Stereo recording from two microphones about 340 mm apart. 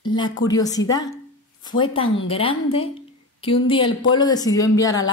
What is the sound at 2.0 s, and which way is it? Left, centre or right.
Speech, left.